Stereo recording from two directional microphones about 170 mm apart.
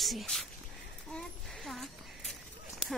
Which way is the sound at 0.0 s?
Centre (ahead or behind).